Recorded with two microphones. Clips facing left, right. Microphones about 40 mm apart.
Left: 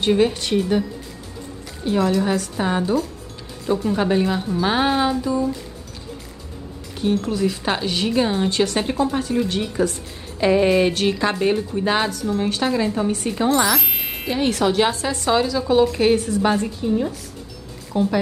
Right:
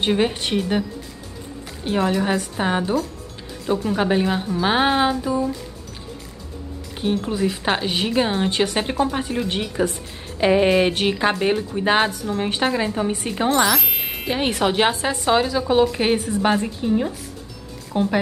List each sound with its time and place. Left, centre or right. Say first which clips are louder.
0.0 s a woman's voice: left 2 dB; centre
1.9 s a woman's voice: left 1 dB; right
7.0 s a woman's voice: left 1 dB; centre
13.5 s music: right 1 dB; centre
14.3 s a woman's voice: left 1 dB; right
17.9 s a woman's voice: left 1 dB; right